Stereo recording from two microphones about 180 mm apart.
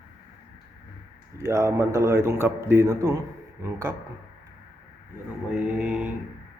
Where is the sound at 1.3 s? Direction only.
15° right (ahead or behind).